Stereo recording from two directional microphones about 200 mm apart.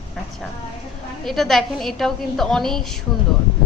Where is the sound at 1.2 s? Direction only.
Centre (ahead or behind).